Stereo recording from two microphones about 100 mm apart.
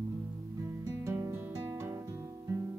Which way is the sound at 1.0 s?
30° right (ahead or behind).